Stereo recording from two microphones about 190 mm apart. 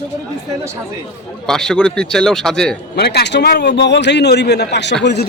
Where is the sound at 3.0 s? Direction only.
60° left (ahead or behind).